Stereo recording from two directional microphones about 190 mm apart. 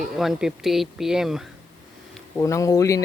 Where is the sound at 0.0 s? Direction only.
Centre (ahead or behind).